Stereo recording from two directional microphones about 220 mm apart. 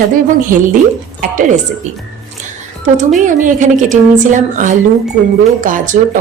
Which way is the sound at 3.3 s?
35° right (ahead or behind).